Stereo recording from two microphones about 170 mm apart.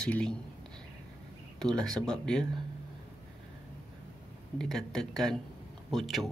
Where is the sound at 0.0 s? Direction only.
5° left (ahead or behind).